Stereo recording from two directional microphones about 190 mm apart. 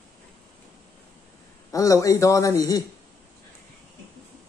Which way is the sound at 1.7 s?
15° left (ahead or behind).